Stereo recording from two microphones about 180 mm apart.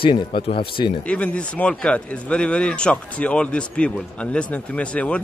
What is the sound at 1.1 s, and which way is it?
Speech, 5° left (ahead or behind).